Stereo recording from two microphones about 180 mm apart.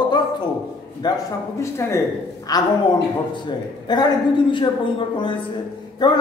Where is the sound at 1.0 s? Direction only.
25° left (ahead or behind).